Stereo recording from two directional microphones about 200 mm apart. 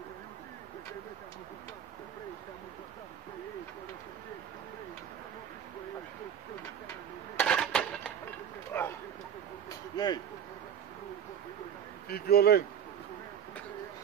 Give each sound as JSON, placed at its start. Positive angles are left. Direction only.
{"t": 7.3, "sound": "dishes", "side_deg": 5}
{"t": 8.7, "sound": "bow-wow", "side_deg": 10}
{"t": 9.7, "sound": "a sound", "side_deg": 20}
{"t": 12.1, "sound": "speech", "side_deg": 50}